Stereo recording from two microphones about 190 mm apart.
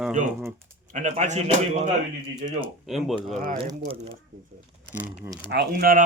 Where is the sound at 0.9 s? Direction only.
40° right (ahead or behind).